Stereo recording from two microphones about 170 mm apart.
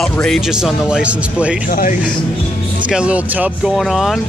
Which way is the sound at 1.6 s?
55° left (ahead or behind).